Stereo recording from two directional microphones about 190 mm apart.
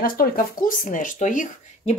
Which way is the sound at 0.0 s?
50° left (ahead or behind).